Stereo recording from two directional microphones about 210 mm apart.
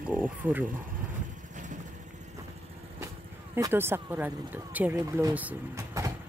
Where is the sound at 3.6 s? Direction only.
15° right (ahead or behind).